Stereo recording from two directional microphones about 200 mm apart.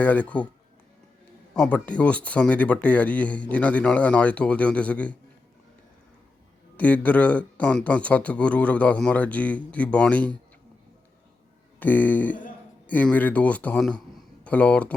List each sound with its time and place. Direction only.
0.0 s speech: 10° left (ahead or behind)
1.5 s speech: 5° left (ahead or behind)
6.7 s speech: 10° left (ahead or behind)
11.8 s speech: 10° left (ahead or behind)